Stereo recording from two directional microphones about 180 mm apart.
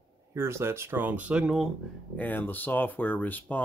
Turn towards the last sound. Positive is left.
turn(degrees=10)  # may be behind; listen again after turning